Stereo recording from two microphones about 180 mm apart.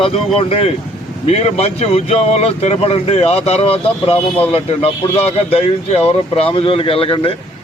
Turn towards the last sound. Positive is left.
turn(degrees=30)  # may be behind; listen again after turning